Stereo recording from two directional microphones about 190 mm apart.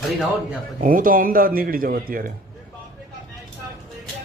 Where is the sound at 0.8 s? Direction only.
45° right (ahead or behind).